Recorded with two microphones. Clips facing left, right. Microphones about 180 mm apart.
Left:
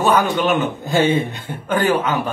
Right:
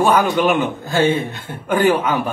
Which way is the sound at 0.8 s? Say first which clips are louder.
Left 1 dB; 20° left (ahead or behind).